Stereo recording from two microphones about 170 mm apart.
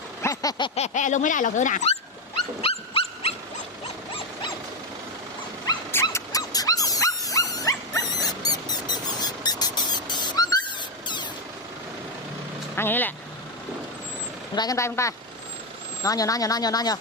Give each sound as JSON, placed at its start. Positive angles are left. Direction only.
{"t": 0.2, "sound": "a sound", "side_deg": 20}
{"t": 0.8, "sound": "speech", "side_deg": 45}
{"t": 2.6, "sound": "dog", "side_deg": 35}
{"t": 5.9, "sound": "dog", "side_deg": 15}
{"t": 8.7, "sound": "a sound", "side_deg": 25}
{"t": 12.7, "sound": "speech", "side_deg": 10}
{"t": 14.5, "sound": "a woman's voice", "side_deg": 20}